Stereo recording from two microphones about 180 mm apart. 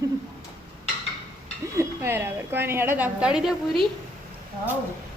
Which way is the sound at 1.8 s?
15° right (ahead or behind).